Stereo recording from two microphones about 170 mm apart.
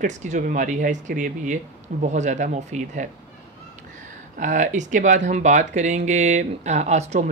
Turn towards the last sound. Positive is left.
turn(degrees=-40)  # may be behind; listen again after turning